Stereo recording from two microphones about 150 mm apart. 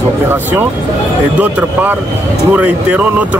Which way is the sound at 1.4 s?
10° right (ahead or behind).